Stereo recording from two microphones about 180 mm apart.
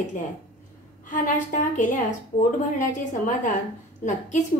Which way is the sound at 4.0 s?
40° left (ahead or behind).